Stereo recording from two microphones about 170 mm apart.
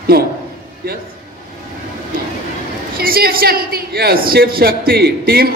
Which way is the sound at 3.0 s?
60° right (ahead or behind).